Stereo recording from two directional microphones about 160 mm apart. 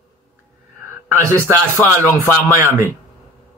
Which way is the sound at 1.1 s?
15° right (ahead or behind).